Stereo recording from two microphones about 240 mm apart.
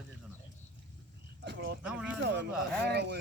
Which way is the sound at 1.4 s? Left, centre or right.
Right.